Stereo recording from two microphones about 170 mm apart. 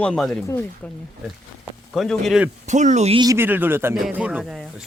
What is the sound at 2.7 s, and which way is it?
Speech, 45° right (ahead or behind).